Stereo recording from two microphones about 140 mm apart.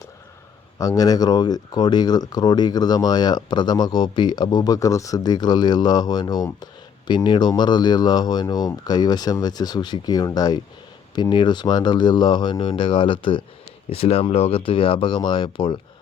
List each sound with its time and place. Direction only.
0.8 s speech: 25° left (ahead or behind)